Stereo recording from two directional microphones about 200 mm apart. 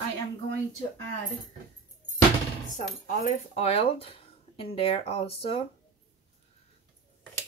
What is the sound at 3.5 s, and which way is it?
Speech, 30° left (ahead or behind).